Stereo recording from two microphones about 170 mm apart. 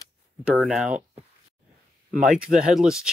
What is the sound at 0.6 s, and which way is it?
Speech, 5° right (ahead or behind).